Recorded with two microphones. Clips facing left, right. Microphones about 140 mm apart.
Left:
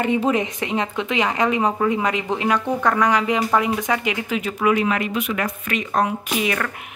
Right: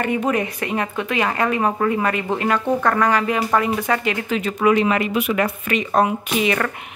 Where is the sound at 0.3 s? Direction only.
20° left (ahead or behind).